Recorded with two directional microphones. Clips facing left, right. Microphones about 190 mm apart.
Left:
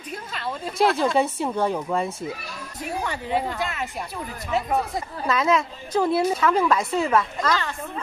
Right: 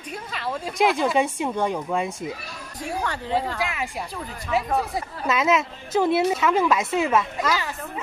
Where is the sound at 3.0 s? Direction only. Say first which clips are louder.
Even; 10° left (ahead or behind).